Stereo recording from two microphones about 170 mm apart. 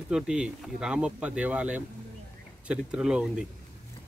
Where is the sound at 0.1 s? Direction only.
5° right (ahead or behind).